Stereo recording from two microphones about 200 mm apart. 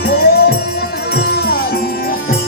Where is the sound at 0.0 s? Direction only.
50° left (ahead or behind).